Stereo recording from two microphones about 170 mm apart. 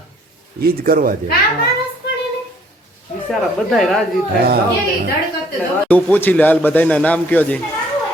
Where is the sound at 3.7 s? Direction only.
Centre (ahead or behind).